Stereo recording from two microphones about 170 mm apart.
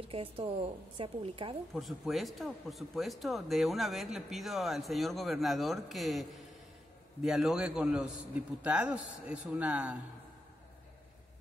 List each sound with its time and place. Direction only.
0.1 s a woman's voice: 35° right (ahead or behind)
1.7 s speech: centre (ahead or behind)